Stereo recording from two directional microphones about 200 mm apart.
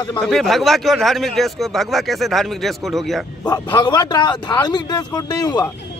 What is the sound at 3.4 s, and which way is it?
Speech, 20° left (ahead or behind).